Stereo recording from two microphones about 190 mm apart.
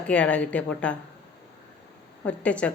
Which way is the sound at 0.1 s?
5° left (ahead or behind).